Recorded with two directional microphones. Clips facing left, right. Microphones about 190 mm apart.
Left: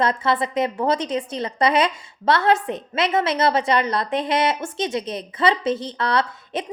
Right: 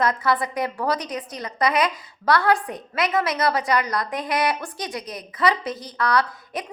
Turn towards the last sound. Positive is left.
turn(degrees=25)  # may be behind; listen again after turning